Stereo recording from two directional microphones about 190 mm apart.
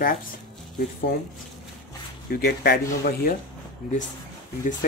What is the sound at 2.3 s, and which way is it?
Speech, 55° left (ahead or behind).